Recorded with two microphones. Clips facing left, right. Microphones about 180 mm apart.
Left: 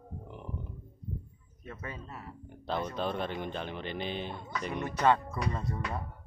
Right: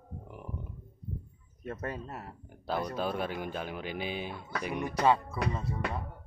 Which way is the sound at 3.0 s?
5° right (ahead or behind).